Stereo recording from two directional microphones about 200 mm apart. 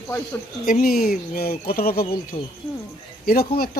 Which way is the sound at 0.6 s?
45° left (ahead or behind).